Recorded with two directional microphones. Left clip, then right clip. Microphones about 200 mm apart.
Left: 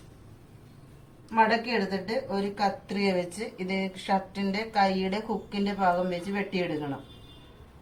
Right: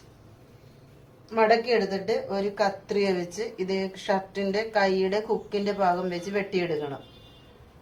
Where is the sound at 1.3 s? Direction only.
45° right (ahead or behind).